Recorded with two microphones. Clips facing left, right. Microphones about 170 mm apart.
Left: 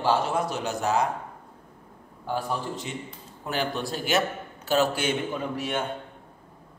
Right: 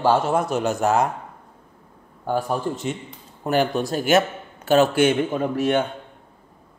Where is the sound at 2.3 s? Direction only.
50° right (ahead or behind).